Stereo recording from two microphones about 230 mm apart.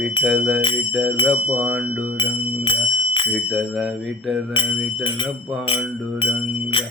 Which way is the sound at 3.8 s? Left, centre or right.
Centre.